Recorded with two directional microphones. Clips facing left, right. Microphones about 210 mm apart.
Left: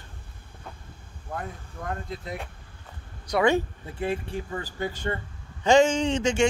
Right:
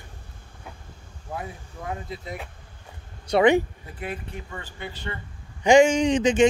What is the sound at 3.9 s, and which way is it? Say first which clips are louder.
Speech: left 5 dB; 25° left (ahead or behind).